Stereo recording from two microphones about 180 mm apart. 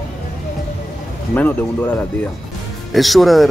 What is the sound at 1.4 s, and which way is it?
Speech, 10° left (ahead or behind).